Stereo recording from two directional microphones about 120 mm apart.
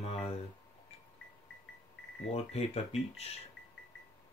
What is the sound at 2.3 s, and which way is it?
Speech, 60° left (ahead or behind).